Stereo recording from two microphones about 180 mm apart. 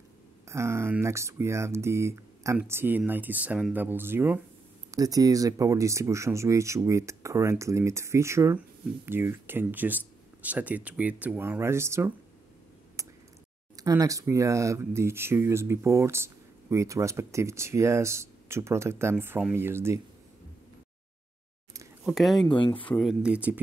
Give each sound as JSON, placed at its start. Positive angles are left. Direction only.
{"t": 0.5, "sound": "speech", "side_deg": -15}
{"t": 13.0, "sound": "a sound", "side_deg": -15}
{"t": 13.7, "sound": "speech", "side_deg": -20}
{"t": 22.0, "sound": "speech", "side_deg": 0}
{"t": 22.5, "sound": "speech", "side_deg": 25}
{"t": 22.9, "sound": "speech", "side_deg": -5}